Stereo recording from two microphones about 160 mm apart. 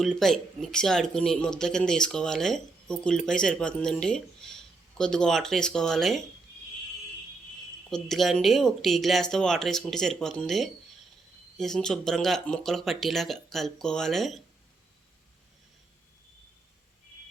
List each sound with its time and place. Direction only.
0.0 s speech: centre (ahead or behind)
7.9 s speech: centre (ahead or behind)